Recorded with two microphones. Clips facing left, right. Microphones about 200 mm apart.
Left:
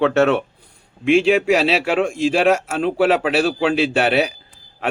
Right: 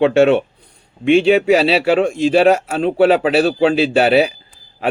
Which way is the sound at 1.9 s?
35° right (ahead or behind).